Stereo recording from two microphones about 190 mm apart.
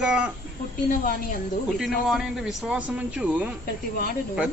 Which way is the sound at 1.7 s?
Centre (ahead or behind).